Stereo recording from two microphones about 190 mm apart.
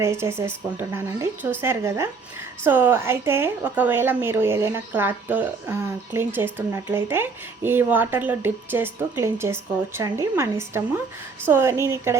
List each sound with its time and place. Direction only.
0.0 s speech: 15° right (ahead or behind)